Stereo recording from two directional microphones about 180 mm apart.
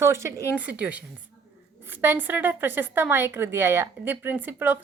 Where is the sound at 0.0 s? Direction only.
15° right (ahead or behind).